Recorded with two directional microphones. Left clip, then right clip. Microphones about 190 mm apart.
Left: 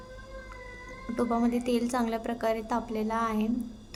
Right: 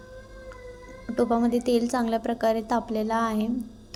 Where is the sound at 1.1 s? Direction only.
15° right (ahead or behind).